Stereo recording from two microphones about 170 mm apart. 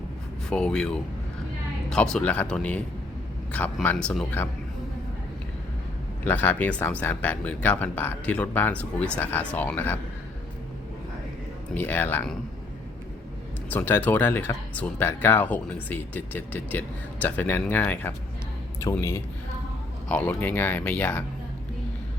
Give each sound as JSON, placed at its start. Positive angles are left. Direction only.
{"t": 0.5, "sound": "speech", "side_deg": 5}
{"t": 6.2, "sound": "speech", "side_deg": 10}
{"t": 11.7, "sound": "speech", "side_deg": 10}
{"t": 13.7, "sound": "speech", "side_deg": 10}